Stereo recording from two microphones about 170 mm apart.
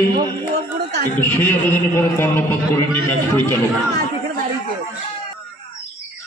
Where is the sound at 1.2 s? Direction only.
10° left (ahead or behind).